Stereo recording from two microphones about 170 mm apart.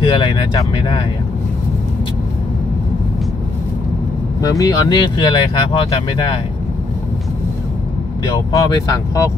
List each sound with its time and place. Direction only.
0.0 s speech: 25° left (ahead or behind)
4.4 s speech: 20° left (ahead or behind)
8.3 s speech: 20° left (ahead or behind)